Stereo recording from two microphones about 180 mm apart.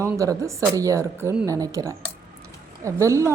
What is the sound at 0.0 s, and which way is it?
A woman's voice, 15° right (ahead or behind).